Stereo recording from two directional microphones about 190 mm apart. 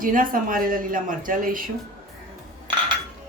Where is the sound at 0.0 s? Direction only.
45° right (ahead or behind).